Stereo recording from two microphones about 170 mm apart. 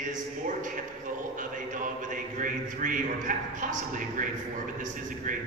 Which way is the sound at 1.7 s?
50° right (ahead or behind).